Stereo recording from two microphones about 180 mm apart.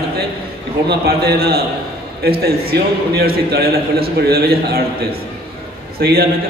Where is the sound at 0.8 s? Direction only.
60° right (ahead or behind).